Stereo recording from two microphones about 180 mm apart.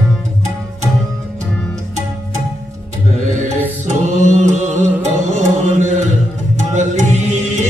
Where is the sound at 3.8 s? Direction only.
40° right (ahead or behind).